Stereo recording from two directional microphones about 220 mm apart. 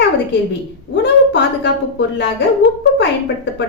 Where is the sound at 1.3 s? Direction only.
50° left (ahead or behind).